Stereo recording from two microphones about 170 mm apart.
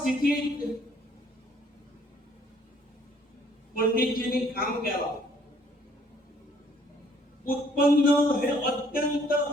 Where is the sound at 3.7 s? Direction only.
60° left (ahead or behind).